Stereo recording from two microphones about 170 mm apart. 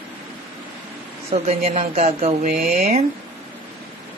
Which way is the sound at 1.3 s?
35° right (ahead or behind).